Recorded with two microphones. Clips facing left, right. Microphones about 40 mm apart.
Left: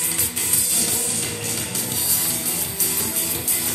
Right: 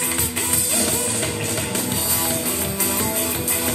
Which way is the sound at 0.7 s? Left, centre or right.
Right.